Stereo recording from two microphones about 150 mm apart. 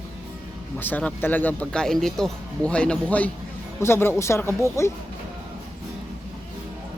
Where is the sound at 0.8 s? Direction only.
10° left (ahead or behind).